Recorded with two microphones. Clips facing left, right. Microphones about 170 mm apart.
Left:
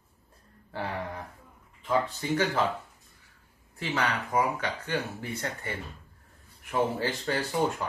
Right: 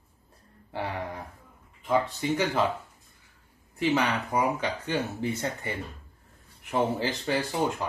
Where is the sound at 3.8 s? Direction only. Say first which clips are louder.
Right 5 dB; 15° right (ahead or behind).